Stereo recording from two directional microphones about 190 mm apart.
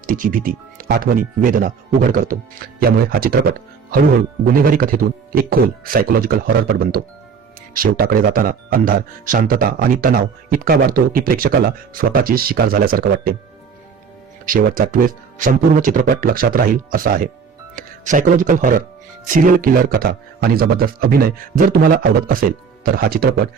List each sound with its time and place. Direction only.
0.0 s speech: 45° right (ahead or behind)
4.5 s speech: 50° right (ahead or behind)
14.4 s speech: 45° right (ahead or behind)